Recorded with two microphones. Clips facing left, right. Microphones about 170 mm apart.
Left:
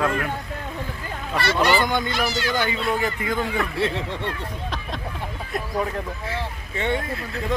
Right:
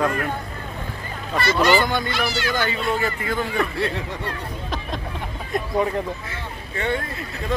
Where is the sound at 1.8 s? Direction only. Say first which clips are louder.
Even; 20° left (ahead or behind).